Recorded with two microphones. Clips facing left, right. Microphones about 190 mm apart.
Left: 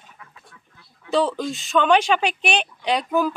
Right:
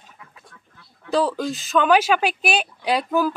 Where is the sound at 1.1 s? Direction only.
Centre (ahead or behind).